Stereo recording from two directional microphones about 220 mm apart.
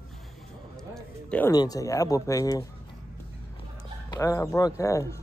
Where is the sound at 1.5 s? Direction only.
15° left (ahead or behind).